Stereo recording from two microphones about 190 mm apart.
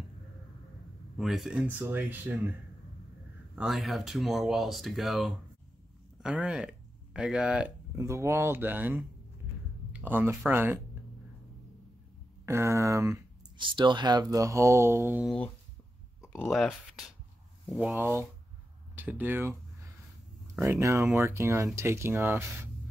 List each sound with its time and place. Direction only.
1.1 s speech: centre (ahead or behind)
3.5 s speech: centre (ahead or behind)
12.4 s speech: 15° right (ahead or behind)
15.2 s speech: 5° left (ahead or behind)
17.9 s speech: 15° right (ahead or behind)